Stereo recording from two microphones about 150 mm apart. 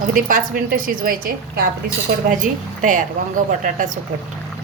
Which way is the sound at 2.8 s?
60° right (ahead or behind).